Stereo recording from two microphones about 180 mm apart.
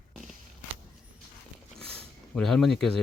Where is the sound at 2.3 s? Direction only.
Centre (ahead or behind).